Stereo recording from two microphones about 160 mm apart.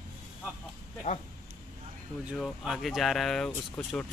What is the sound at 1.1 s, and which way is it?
Speech, 55° left (ahead or behind).